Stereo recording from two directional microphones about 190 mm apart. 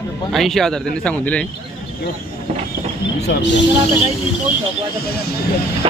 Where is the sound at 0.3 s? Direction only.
Centre (ahead or behind).